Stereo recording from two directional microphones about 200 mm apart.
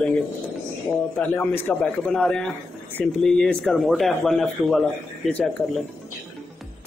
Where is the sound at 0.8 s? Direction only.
5° left (ahead or behind).